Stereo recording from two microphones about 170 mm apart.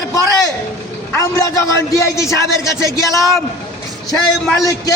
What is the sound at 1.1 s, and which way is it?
A man's voice, 20° left (ahead or behind).